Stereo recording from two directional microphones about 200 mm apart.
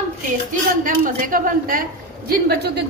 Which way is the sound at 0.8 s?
40° right (ahead or behind).